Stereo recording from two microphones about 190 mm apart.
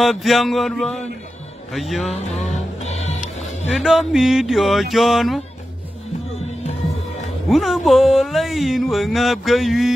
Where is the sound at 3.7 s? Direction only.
Centre (ahead or behind).